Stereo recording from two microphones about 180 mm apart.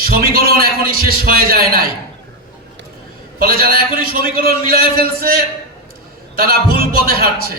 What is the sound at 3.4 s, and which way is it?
A man's voice, 55° right (ahead or behind).